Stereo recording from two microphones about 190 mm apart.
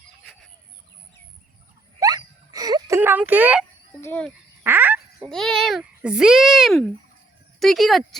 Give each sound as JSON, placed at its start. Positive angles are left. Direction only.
{"t": 2.0, "sound": "a sound", "side_deg": -20}
{"t": 4.0, "sound": "speech", "side_deg": 10}
{"t": 4.6, "sound": "frog", "side_deg": -10}
{"t": 5.3, "sound": "a child's voice", "side_deg": 0}